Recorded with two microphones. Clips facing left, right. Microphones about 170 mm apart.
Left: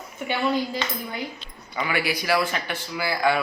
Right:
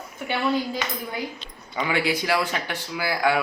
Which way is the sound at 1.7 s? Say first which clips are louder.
Right 2 dB; 20° right (ahead or behind).